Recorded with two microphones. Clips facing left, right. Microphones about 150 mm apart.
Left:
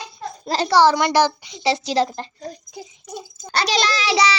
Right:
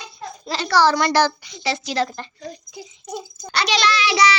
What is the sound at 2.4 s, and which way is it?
A child's voice, 45° left (ahead or behind).